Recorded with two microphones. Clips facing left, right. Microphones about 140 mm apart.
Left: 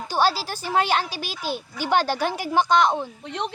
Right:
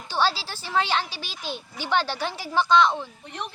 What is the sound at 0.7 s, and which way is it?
Speech, 45° left (ahead or behind).